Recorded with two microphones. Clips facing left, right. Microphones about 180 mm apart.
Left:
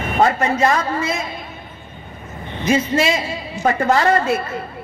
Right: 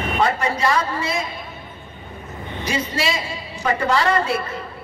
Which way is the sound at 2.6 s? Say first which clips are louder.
Left 7 dB; 50° left (ahead or behind).